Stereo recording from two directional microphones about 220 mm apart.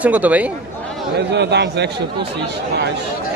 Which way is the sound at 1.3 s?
50° right (ahead or behind).